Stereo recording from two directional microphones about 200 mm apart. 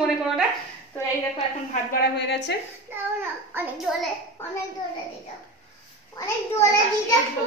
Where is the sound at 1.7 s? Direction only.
50° left (ahead or behind).